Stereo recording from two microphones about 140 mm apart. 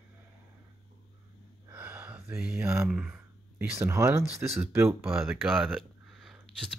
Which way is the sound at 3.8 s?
20° right (ahead or behind).